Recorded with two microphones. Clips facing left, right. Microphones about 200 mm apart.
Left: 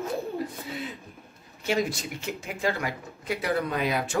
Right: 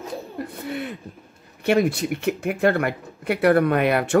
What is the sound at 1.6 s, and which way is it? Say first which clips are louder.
Speech: right 8 dB; 60° right (ahead or behind).